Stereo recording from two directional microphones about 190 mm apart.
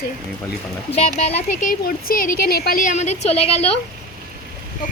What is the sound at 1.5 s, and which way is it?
Speech, 45° left (ahead or behind).